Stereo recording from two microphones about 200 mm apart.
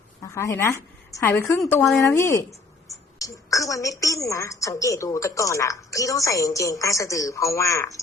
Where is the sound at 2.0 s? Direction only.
15° left (ahead or behind).